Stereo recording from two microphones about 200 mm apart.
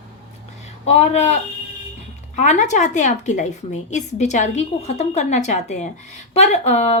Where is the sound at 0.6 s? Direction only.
35° left (ahead or behind).